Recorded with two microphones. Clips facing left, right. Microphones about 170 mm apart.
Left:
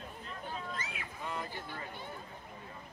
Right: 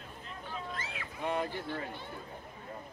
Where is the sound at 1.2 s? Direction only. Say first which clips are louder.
Right 8 dB; 65° right (ahead or behind).